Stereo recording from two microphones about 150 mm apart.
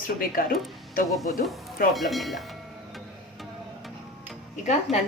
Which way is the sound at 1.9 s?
Centre (ahead or behind).